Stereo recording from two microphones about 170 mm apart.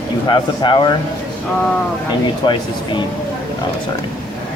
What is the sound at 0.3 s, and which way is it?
Speech, 30° left (ahead or behind).